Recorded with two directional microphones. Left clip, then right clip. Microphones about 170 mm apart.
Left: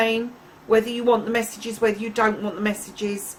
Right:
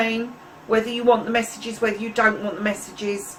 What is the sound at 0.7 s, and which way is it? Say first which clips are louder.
Speech: even; 55° left (ahead or behind).